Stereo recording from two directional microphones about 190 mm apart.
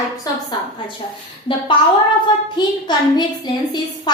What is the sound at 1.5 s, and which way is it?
Speech, 30° left (ahead or behind).